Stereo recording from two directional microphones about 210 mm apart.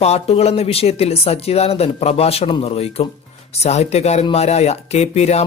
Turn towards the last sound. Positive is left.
turn(degrees=30)  # may be behind; listen again after turning